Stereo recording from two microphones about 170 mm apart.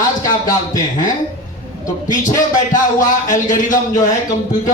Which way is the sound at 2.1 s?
50° left (ahead or behind).